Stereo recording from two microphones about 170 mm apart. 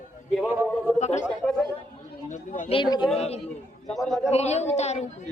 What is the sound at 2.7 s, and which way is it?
Speech, 30° left (ahead or behind).